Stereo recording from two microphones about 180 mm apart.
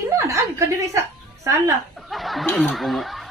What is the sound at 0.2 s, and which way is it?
A woman's voice, 15° right (ahead or behind).